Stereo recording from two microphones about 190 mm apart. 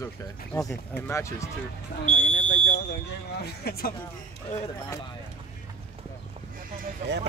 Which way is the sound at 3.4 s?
55° left (ahead or behind).